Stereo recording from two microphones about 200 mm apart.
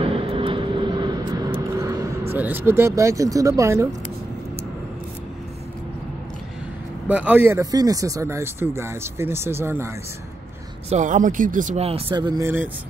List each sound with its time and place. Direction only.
0.0 s vehicle: 25° right (ahead or behind)
2.3 s speech: 10° right (ahead or behind)
7.1 s speech: 10° right (ahead or behind)
10.9 s speech: 40° right (ahead or behind); by 12.6 s 10° right (ahead or behind)